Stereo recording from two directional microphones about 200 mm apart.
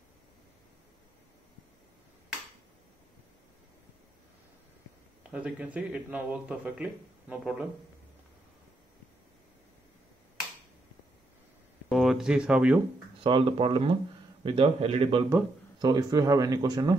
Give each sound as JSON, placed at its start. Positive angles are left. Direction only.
{"t": 5.3, "sound": "speech", "side_deg": -5}
{"t": 11.9, "sound": "speech", "side_deg": 0}
{"t": 13.2, "sound": "speech", "side_deg": -25}
{"t": 15.2, "sound": "speech", "side_deg": -15}